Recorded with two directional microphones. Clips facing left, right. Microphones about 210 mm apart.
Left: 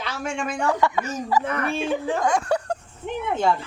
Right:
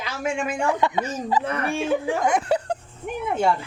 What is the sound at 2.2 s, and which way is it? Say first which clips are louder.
Speech: right 1 dB; 20° right (ahead or behind).